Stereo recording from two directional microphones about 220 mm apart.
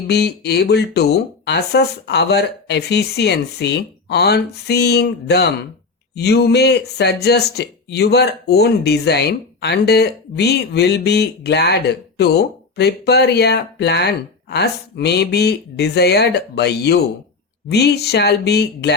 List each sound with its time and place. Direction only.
0.1 s speech: 50° left (ahead or behind)